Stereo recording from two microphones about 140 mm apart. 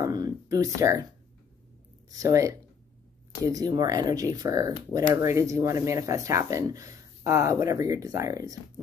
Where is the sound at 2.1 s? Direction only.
25° right (ahead or behind).